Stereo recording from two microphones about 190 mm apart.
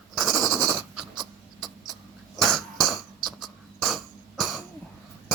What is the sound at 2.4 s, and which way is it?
Cough, centre (ahead or behind).